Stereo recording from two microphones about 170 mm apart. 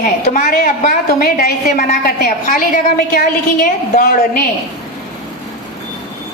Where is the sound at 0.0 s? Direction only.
50° left (ahead or behind).